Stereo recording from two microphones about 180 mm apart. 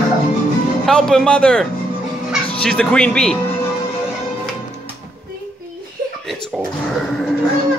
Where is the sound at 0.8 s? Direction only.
5° left (ahead or behind).